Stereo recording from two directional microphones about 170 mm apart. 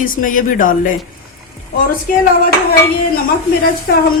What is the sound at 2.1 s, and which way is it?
Speech, 50° left (ahead or behind).